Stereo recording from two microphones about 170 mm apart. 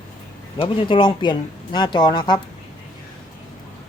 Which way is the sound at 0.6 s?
30° left (ahead or behind).